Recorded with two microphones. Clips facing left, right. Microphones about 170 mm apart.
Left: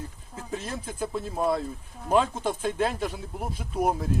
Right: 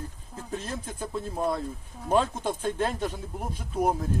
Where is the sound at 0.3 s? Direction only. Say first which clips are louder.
Left 1 dB; 10° left (ahead or behind).